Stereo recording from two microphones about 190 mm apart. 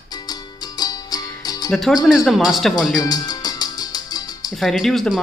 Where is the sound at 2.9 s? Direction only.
20° left (ahead or behind).